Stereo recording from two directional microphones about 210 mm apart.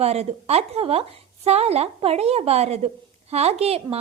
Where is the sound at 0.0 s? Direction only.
30° right (ahead or behind).